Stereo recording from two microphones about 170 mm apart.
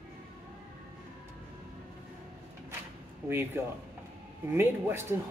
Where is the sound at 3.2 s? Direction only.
15° right (ahead or behind).